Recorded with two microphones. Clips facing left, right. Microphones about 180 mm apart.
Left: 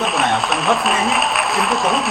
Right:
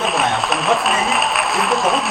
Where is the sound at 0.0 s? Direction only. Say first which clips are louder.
Even; centre (ahead or behind).